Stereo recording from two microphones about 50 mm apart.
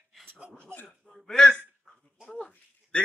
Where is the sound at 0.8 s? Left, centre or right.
Centre.